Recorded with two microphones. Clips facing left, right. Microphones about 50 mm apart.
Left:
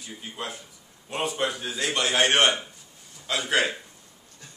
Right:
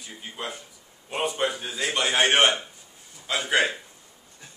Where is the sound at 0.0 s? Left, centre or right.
Centre.